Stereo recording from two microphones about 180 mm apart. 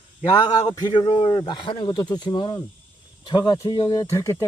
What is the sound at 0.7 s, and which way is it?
Speech, 20° left (ahead or behind).